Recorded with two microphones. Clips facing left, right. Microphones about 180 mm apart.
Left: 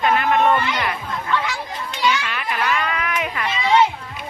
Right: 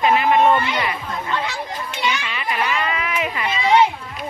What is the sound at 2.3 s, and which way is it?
Speech, 5° right (ahead or behind).